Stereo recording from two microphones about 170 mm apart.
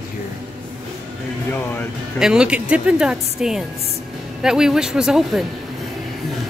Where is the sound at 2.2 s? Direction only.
5° right (ahead or behind).